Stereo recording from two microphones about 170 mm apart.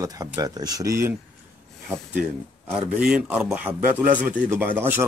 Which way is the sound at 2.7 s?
5° right (ahead or behind).